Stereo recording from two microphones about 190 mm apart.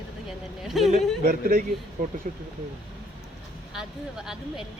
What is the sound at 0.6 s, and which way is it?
Speech, centre (ahead or behind).